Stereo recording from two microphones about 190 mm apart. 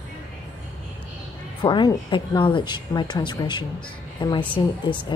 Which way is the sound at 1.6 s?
25° left (ahead or behind).